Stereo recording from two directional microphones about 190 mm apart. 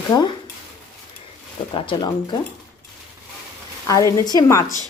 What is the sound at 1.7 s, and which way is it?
Speech, 25° left (ahead or behind).